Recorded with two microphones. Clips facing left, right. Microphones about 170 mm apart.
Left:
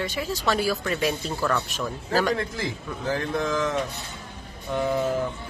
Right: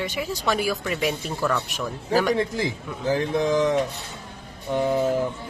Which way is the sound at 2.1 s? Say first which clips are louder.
Right 3 dB; 15° right (ahead or behind).